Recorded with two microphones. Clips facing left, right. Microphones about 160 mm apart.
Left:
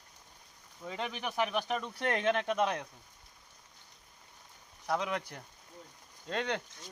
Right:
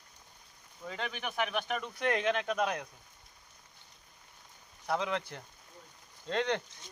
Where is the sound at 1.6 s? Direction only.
30° left (ahead or behind).